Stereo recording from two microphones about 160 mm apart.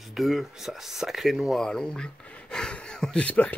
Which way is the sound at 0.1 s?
Centre (ahead or behind).